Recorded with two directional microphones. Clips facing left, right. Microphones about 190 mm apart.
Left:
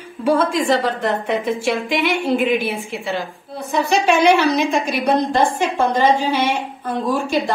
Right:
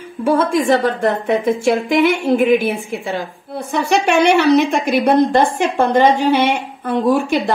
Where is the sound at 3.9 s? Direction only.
65° right (ahead or behind).